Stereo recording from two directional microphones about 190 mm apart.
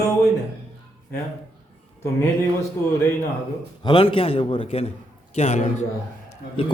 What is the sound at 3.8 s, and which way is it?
A man's voice, 25° left (ahead or behind).